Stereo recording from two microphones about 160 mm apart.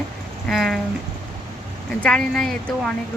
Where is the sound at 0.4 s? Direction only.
Centre (ahead or behind).